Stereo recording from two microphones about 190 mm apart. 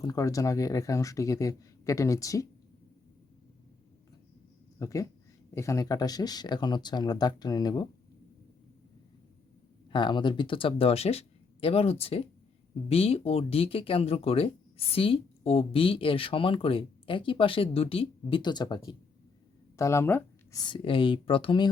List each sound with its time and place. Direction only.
0.0 s speech: 20° left (ahead or behind)
4.8 s speech: 15° left (ahead or behind)
9.9 s speech: 25° left (ahead or behind)
19.7 s a sound: 15° left (ahead or behind)
20.7 s speech: 25° left (ahead or behind)